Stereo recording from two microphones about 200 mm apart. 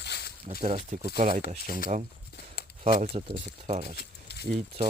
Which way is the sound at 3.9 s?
55° left (ahead or behind).